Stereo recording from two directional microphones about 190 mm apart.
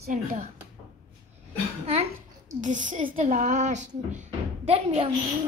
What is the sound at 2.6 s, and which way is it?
Speech, 40° right (ahead or behind).